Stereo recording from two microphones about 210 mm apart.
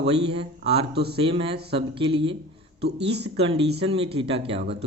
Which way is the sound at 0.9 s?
50° right (ahead or behind).